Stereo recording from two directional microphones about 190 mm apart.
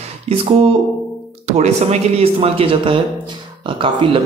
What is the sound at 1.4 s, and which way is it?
Speech, 35° right (ahead or behind).